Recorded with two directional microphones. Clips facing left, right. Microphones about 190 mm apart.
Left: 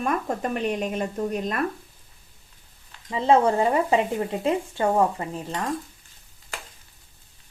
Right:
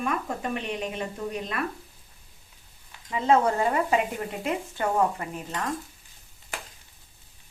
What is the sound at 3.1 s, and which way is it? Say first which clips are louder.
Speech: left 3 dB; 30° left (ahead or behind).